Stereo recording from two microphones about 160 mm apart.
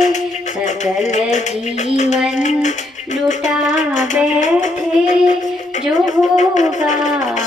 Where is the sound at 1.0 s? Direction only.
50° left (ahead or behind).